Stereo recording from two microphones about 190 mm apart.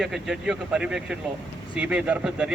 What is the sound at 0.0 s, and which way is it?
A man's voice, 5° right (ahead or behind).